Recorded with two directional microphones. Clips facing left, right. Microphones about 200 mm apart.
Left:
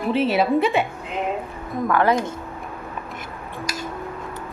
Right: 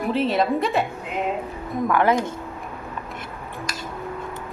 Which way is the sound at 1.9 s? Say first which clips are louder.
Left 1 dB; 15° right (ahead or behind).